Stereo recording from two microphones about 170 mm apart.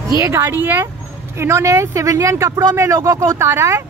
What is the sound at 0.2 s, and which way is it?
Speech, 15° right (ahead or behind).